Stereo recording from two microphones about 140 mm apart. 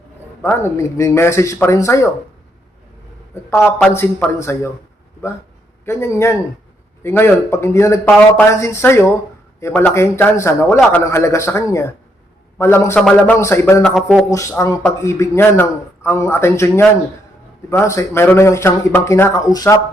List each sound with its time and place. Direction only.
0.4 s a man's voice: 20° left (ahead or behind)
3.3 s a sound: 20° left (ahead or behind)
3.8 s a man's voice: 10° left (ahead or behind)
5.8 s a man's voice: 20° left (ahead or behind)
13.0 s speech: 5° left (ahead or behind)
13.4 s a man's voice: 20° left (ahead or behind)
13.8 s speech: centre (ahead or behind)
14.3 s a man's voice: 20° left (ahead or behind)